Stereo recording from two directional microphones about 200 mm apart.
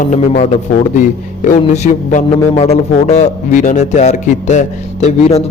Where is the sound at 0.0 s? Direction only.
40° left (ahead or behind).